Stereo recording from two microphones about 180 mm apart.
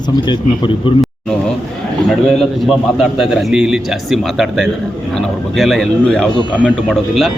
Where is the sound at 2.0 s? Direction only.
Centre (ahead or behind).